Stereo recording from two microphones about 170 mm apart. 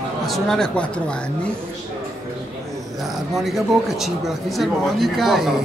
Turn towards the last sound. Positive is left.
turn(degrees=0)  # may be behind; listen again after turning